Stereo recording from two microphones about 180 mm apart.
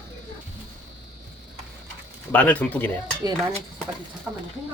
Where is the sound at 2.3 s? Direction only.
10° left (ahead or behind).